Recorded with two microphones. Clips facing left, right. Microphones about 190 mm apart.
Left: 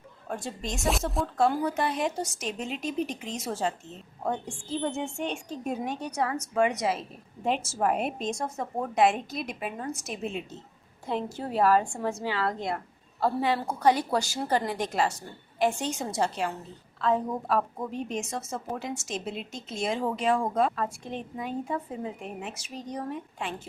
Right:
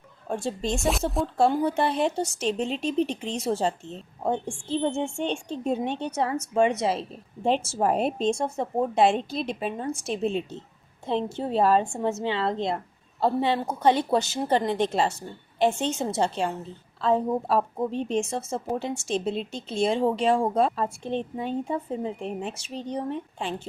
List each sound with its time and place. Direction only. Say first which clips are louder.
0.3 s a woman's voice: right 6 dB; 30° right (ahead or behind)
0.8 s speech: left 2 dB; centre (ahead or behind)
1.4 s a woman's voice: right 3 dB; 30° right (ahead or behind)